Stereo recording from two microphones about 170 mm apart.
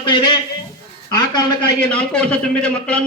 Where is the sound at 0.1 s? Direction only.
25° left (ahead or behind).